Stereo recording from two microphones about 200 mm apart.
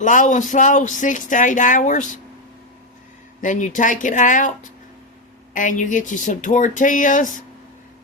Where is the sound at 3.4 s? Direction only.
40° left (ahead or behind).